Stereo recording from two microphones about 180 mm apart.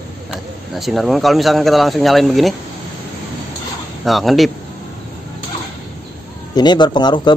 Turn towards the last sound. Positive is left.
turn(degrees=25)  # may be behind; listen again after turning